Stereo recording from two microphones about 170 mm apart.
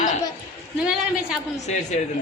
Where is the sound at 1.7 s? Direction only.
45° left (ahead or behind).